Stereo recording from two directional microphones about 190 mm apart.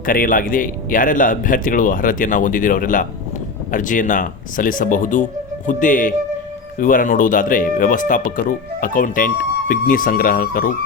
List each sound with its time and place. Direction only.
0.0 s speech: 45° left (ahead or behind)